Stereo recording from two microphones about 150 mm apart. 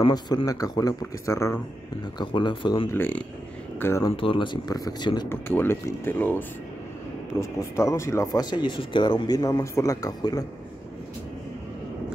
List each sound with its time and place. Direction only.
0.0 s speech: 30° left (ahead or behind)
2.1 s speech: 30° left (ahead or behind)
2.9 s speech: 10° left (ahead or behind)
4.2 s speech: 35° left (ahead or behind)
5.3 s speech: 15° left (ahead or behind)